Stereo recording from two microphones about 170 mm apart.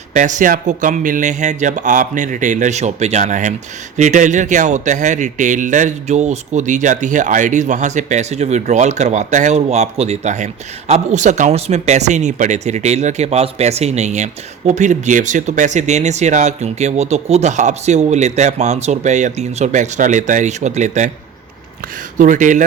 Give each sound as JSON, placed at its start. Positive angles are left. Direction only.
{"t": 0.1, "sound": "speech", "side_deg": -45}
{"t": 22.2, "sound": "speech", "side_deg": -50}